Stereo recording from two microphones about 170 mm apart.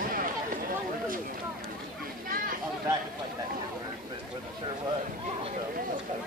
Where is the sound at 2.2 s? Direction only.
55° right (ahead or behind).